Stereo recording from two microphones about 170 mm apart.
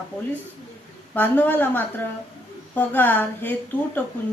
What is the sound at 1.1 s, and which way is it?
A woman's voice, 10° left (ahead or behind).